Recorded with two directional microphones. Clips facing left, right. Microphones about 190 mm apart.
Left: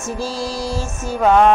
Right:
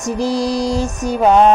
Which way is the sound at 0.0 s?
20° right (ahead or behind).